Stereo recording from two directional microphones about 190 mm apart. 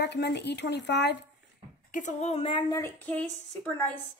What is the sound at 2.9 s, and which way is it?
A woman's voice, 10° left (ahead or behind).